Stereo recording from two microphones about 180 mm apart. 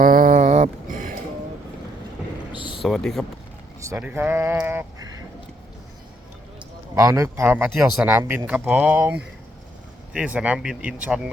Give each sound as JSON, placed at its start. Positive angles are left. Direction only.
{"t": 0.0, "sound": "a sound", "side_deg": -50}
{"t": 2.5, "sound": "a sound", "side_deg": 25}
{"t": 2.8, "sound": "speech", "side_deg": 0}
{"t": 3.8, "sound": "vehicle", "side_deg": -15}
{"t": 4.0, "sound": "speech", "side_deg": -10}
{"t": 6.9, "sound": "speech", "side_deg": -20}
{"t": 8.2, "sound": "speech", "side_deg": -20}
{"t": 8.4, "sound": "speech", "side_deg": -5}